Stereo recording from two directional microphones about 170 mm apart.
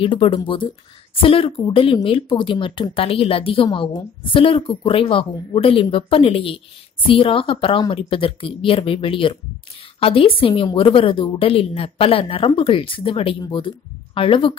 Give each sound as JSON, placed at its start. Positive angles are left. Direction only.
{"t": 0.0, "sound": "speech", "side_deg": 30}